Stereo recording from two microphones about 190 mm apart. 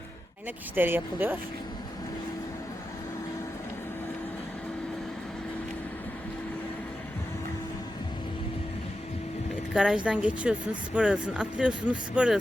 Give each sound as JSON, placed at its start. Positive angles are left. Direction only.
{"t": 0.8, "sound": "speech", "side_deg": -10}
{"t": 9.7, "sound": "speech", "side_deg": -5}